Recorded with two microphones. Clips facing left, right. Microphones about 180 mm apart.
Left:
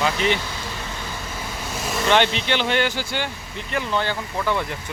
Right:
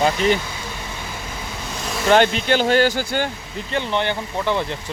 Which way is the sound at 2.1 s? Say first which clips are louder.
Right 4 dB; 40° right (ahead or behind).